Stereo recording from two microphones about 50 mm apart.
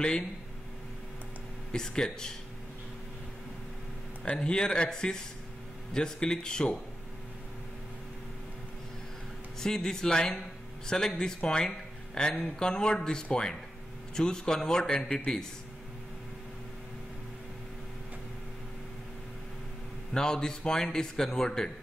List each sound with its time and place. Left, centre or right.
1.7 s a man's voice: centre
4.4 s a man's voice: centre
9.6 s a man's voice: centre
20.2 s a man's voice: centre